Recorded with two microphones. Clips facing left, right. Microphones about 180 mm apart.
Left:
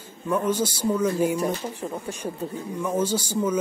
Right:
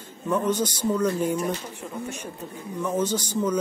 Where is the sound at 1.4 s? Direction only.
35° left (ahead or behind).